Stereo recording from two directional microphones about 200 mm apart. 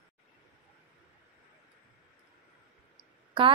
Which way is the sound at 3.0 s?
25° right (ahead or behind).